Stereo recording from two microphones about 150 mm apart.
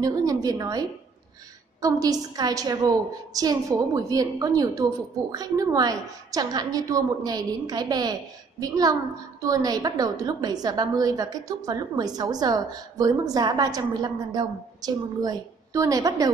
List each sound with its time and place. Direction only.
0.0 s a woman's voice: 25° right (ahead or behind)